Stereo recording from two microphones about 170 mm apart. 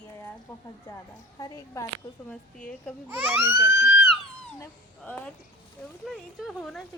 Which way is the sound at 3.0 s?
10° right (ahead or behind).